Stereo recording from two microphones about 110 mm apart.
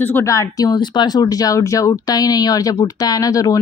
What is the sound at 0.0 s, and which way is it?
A woman's voice, 20° left (ahead or behind).